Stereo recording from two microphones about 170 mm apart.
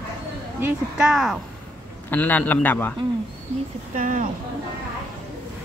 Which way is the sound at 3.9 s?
50° right (ahead or behind).